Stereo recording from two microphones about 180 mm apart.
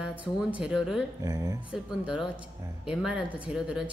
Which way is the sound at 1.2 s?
20° right (ahead or behind).